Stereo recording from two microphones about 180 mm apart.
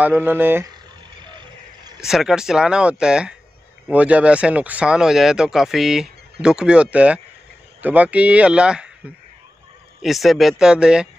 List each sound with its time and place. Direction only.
0.0 s speech: 10° right (ahead or behind)
1.2 s music: 25° right (ahead or behind)
2.0 s speech: centre (ahead or behind)
10.0 s speech: centre (ahead or behind)